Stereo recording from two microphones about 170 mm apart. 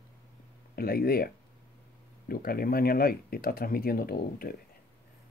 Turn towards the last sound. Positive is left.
turn(degrees=60)  # may be behind; listen again after turning